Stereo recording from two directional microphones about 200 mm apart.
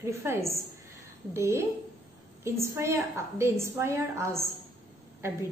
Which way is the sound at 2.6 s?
15° right (ahead or behind).